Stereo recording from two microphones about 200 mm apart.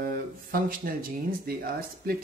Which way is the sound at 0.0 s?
45° right (ahead or behind).